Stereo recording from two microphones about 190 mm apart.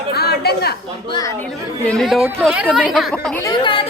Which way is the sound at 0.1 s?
55° left (ahead or behind).